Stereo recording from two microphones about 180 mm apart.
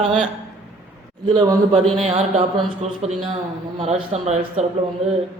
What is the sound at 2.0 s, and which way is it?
A man's voice, 35° right (ahead or behind).